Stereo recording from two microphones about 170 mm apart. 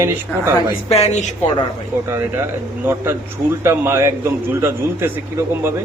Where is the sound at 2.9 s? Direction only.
15° right (ahead or behind).